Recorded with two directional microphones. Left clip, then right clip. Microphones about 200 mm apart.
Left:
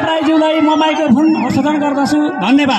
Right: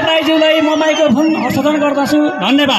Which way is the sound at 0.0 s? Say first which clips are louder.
Right 2 dB; 55° left (ahead or behind).